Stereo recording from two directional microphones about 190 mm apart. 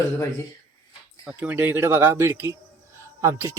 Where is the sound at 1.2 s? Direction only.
5° right (ahead or behind).